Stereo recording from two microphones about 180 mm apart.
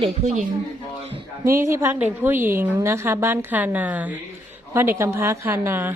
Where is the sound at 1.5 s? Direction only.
15° right (ahead or behind).